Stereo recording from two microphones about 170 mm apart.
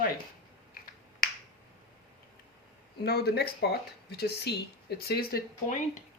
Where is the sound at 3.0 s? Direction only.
70° left (ahead or behind).